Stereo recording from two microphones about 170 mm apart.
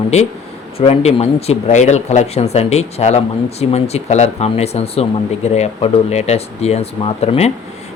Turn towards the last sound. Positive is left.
turn(degrees=35)  # may be behind; listen again after turning